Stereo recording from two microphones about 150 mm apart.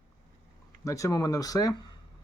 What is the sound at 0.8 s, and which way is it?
Speech, 20° left (ahead or behind).